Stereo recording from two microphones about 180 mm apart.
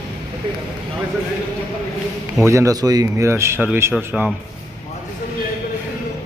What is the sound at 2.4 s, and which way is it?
Speech, 15° right (ahead or behind).